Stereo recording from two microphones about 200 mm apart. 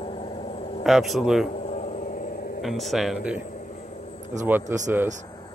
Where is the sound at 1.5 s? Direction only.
40° left (ahead or behind).